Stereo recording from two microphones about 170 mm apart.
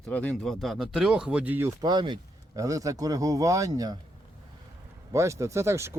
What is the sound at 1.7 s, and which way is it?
Speech, 25° right (ahead or behind).